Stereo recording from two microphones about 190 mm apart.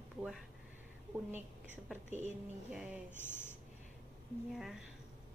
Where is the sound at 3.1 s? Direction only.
10° left (ahead or behind).